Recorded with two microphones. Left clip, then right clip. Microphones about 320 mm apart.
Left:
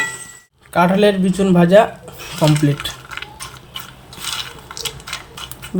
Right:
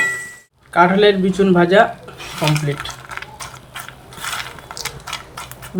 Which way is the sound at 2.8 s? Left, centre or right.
Centre.